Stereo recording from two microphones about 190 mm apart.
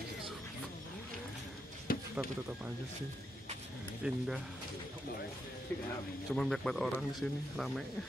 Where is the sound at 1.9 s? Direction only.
50° left (ahead or behind).